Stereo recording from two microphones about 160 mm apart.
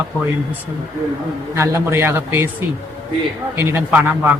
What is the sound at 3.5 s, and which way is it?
Speech, 15° right (ahead or behind).